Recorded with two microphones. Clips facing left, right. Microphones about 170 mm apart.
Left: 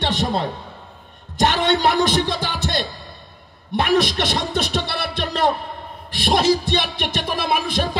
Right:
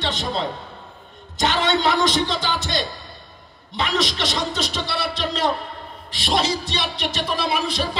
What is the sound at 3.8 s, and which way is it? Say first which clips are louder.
A man's voice: left 5 dB; 55° left (ahead or behind).